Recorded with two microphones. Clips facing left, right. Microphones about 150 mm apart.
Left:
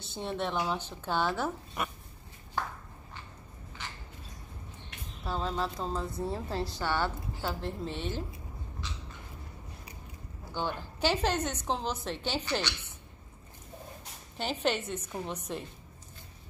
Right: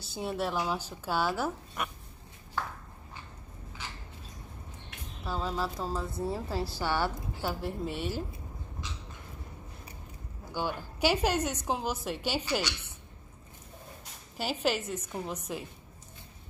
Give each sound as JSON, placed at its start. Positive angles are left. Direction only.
{"t": 0.1, "sound": "a woman's voice", "side_deg": -5}
{"t": 5.2, "sound": "a woman's voice", "side_deg": 0}
{"t": 10.5, "sound": "a woman's voice", "side_deg": -10}
{"t": 14.3, "sound": "a woman's voice", "side_deg": -5}